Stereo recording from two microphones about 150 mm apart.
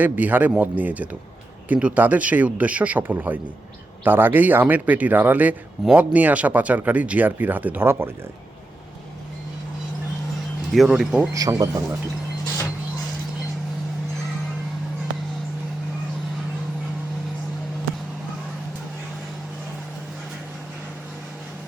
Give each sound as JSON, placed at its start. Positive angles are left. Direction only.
{"t": 0.0, "sound": "speech", "side_deg": -10}
{"t": 10.7, "sound": "speech", "side_deg": 0}
{"t": 11.3, "sound": "speech", "side_deg": -25}